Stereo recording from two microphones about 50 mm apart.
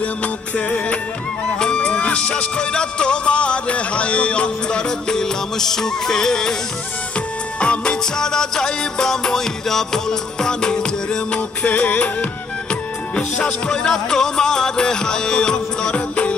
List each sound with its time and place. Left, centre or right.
0.0 s music: left
1.6 s music: centre
7.2 s music: left
11.3 s music: left
13.1 s music: centre